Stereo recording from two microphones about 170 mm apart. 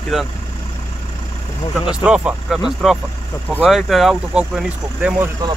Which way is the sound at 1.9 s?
5° right (ahead or behind).